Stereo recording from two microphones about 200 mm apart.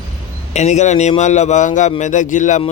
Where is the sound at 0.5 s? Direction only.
35° left (ahead or behind).